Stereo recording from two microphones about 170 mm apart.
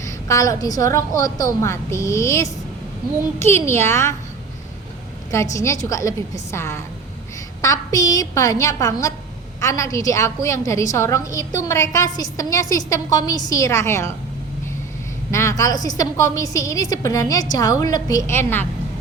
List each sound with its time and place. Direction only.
0.0 s a woman's voice: 20° left (ahead or behind)
5.3 s a woman's voice: 20° left (ahead or behind)
15.3 s a woman's voice: 15° left (ahead or behind)